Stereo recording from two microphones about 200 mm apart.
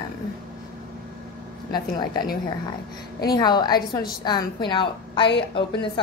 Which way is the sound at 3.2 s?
20° left (ahead or behind).